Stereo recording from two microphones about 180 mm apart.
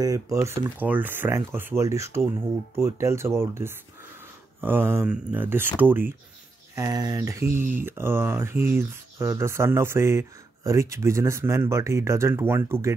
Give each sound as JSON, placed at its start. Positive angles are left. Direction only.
{"t": 0.0, "sound": "speech", "side_deg": -20}